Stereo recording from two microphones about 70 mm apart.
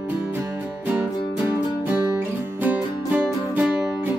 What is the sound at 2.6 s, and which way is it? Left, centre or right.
Music, right.